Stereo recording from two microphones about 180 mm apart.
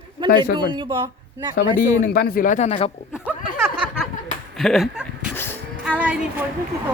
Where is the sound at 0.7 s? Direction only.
25° right (ahead or behind).